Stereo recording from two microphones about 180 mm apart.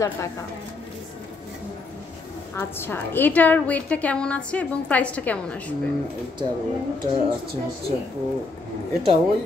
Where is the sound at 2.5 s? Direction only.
10° left (ahead or behind).